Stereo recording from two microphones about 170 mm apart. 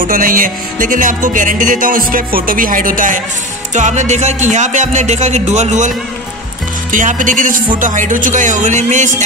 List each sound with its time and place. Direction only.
0.0 s music: 55° right (ahead or behind)